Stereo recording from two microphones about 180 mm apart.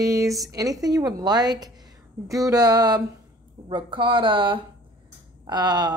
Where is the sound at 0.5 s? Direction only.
20° right (ahead or behind).